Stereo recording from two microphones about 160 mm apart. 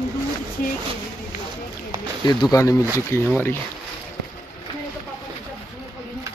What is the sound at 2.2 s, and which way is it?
Speech, 25° left (ahead or behind).